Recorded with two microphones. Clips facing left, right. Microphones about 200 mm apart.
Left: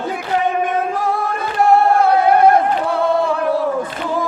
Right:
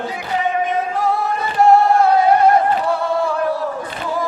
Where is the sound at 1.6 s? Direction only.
60° left (ahead or behind).